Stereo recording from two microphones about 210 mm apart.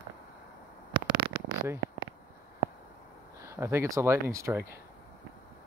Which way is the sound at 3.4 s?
15° right (ahead or behind).